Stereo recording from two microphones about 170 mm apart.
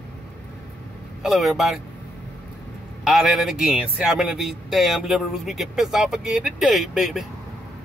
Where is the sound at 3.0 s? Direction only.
Centre (ahead or behind).